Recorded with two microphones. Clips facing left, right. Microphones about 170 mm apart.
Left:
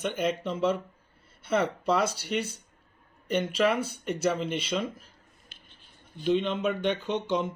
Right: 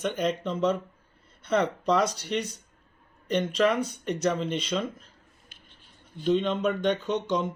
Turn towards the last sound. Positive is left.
turn(degrees=5)  # may be behind; listen again after turning